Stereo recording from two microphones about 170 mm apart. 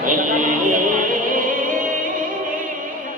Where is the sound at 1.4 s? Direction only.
50° right (ahead or behind).